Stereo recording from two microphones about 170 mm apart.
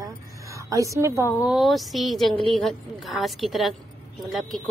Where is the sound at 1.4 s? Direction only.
Centre (ahead or behind).